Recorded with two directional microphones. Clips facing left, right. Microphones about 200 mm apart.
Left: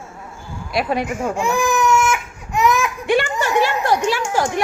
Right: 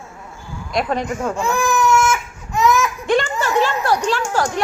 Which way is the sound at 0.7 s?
10° left (ahead or behind).